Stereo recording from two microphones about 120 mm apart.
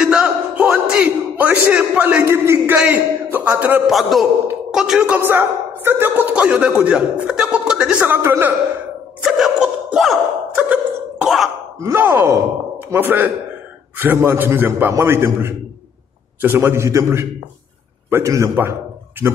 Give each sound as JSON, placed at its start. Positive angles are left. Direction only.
{"t": 0.0, "sound": "speech", "side_deg": -5}
{"t": 3.9, "sound": "a man's voice", "side_deg": 0}
{"t": 9.2, "sound": "a sound", "side_deg": -5}
{"t": 11.2, "sound": "a man's voice", "side_deg": 0}
{"t": 11.8, "sound": "a man's voice", "side_deg": -20}